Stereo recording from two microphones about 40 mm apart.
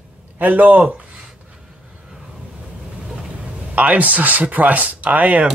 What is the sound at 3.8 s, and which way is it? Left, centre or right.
Speech, right.